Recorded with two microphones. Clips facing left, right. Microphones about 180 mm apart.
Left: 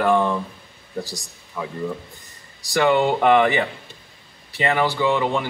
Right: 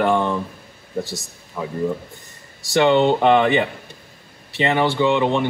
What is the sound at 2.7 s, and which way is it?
Speech, 25° right (ahead or behind).